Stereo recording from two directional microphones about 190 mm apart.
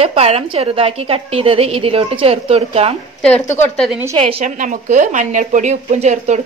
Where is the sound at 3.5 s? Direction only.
5° left (ahead or behind).